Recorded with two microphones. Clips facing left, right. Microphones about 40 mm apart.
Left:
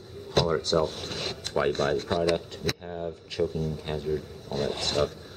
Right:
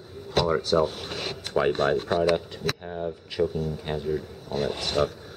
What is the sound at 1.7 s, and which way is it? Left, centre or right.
Speech, right.